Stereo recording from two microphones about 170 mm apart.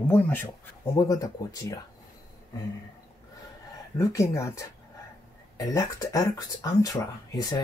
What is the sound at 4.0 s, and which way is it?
Speech, 15° left (ahead or behind).